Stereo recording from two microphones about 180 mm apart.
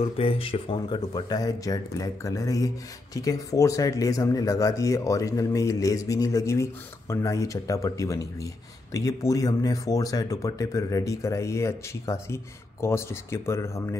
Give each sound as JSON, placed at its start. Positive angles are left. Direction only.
{"t": 0.0, "sound": "speech", "side_deg": 30}